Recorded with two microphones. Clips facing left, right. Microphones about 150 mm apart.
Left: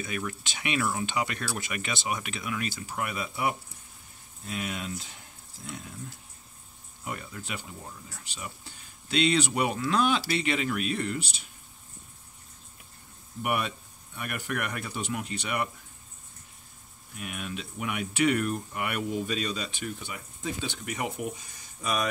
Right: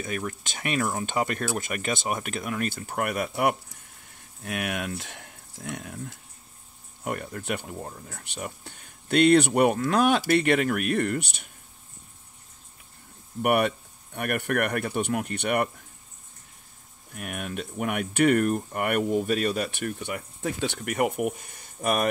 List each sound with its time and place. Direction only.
0.0 s speech: 40° right (ahead or behind); by 11.4 s 60° right (ahead or behind)
13.4 s speech: 65° right (ahead or behind)
17.1 s speech: 55° right (ahead or behind)